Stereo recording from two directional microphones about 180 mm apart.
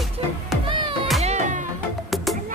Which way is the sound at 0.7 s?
30° right (ahead or behind).